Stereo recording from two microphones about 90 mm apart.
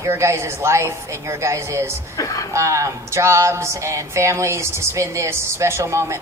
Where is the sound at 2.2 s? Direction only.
40° left (ahead or behind).